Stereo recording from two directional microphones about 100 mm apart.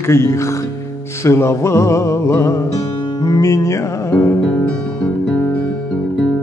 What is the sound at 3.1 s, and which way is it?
Music, 40° left (ahead or behind).